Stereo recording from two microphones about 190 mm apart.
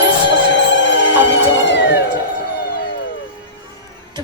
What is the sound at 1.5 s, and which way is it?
Cat, 70° left (ahead or behind).